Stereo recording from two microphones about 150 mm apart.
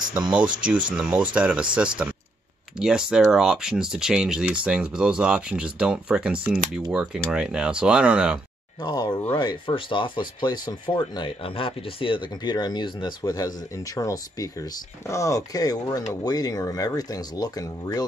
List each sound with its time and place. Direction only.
0.3 s speech: 10° right (ahead or behind)
8.8 s speech: 30° left (ahead or behind)